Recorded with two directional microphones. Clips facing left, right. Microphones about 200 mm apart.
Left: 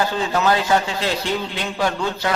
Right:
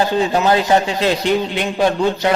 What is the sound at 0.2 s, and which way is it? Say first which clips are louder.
A man's voice: right 4 dB; 20° right (ahead or behind).